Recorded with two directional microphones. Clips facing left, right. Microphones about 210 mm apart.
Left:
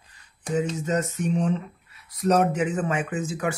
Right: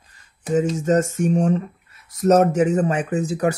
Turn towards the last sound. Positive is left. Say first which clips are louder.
# right 6 dB
turn(degrees=-40)  # may be behind; listen again after turning